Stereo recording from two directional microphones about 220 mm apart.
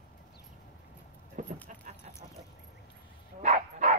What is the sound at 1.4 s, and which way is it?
Dog, 35° right (ahead or behind).